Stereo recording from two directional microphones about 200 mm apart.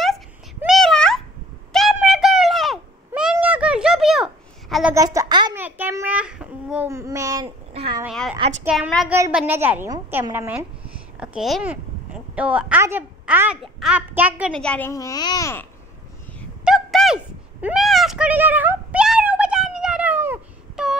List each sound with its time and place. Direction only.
0.6 s a sound: centre (ahead or behind)
4.9 s a woman's voice: 15° right (ahead or behind)
7.4 s speech: 25° right (ahead or behind)
8.0 s a child's voice: centre (ahead or behind)
14.6 s a child's voice: 5° left (ahead or behind)
16.6 s a sound: centre (ahead or behind)